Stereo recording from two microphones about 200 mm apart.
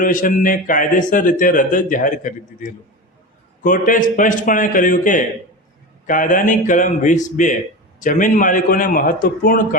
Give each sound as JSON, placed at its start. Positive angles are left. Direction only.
{"t": 0.0, "sound": "a man's voice", "side_deg": 40}